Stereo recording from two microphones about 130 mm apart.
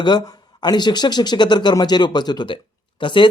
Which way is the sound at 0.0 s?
30° left (ahead or behind).